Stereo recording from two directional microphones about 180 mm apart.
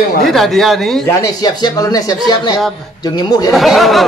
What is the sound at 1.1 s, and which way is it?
Speech, 20° left (ahead or behind).